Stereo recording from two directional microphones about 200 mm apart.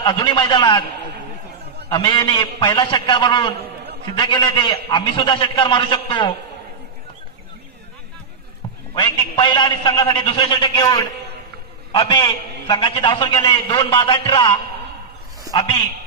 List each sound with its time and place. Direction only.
0.0 s a man's voice: 20° left (ahead or behind)
1.9 s a man's voice: 20° left (ahead or behind)
8.9 s a man's voice: 25° left (ahead or behind)